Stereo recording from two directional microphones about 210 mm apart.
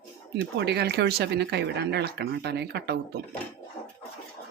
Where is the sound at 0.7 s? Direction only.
50° right (ahead or behind).